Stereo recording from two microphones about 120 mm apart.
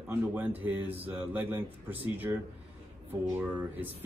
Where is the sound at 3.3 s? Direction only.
10° right (ahead or behind).